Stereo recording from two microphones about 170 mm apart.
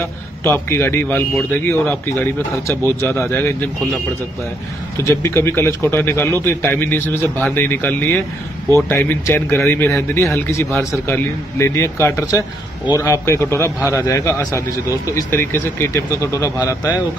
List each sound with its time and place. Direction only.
0.4 s a man's voice: 15° left (ahead or behind)
4.9 s a man's voice: 15° left (ahead or behind)